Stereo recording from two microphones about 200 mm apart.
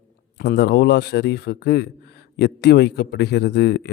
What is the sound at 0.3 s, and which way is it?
A man's voice, 55° left (ahead or behind).